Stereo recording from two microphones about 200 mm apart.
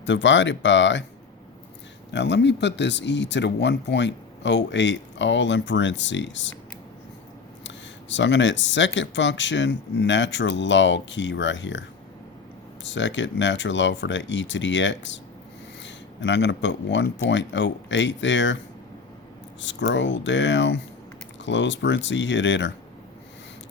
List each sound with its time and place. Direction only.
0.0 s speech: 65° left (ahead or behind)
2.1 s speech: 60° left (ahead or behind)
7.6 s speech: 65° left (ahead or behind)
19.6 s speech: 65° left (ahead or behind)